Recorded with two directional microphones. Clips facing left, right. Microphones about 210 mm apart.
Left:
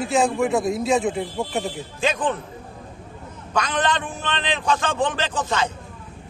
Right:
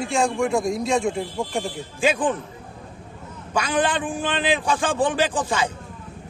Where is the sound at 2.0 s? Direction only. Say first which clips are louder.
Right 2 dB; 10° right (ahead or behind).